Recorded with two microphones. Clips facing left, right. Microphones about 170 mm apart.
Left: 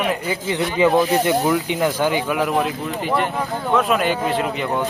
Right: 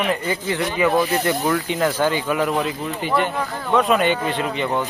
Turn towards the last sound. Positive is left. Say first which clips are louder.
# left 1 dB
turn(degrees=5)  # may be behind; listen again after turning